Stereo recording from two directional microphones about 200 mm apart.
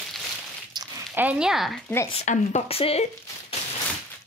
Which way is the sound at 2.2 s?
35° left (ahead or behind).